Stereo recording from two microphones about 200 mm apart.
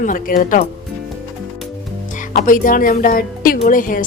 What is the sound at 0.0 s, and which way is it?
Speech, 40° left (ahead or behind).